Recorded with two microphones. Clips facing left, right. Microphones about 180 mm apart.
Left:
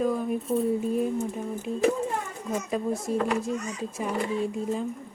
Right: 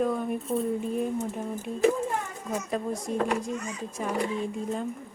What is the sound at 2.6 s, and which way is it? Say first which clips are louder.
Speech: left 3 dB; 5° left (ahead or behind).